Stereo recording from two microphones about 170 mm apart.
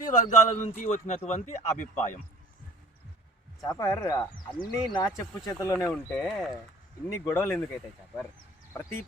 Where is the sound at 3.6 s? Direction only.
20° left (ahead or behind).